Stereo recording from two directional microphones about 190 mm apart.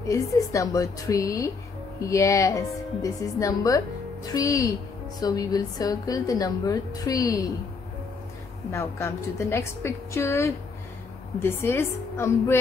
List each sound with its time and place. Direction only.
0.1 s a woman's voice: 15° left (ahead or behind)
8.7 s a woman's voice: 15° left (ahead or behind)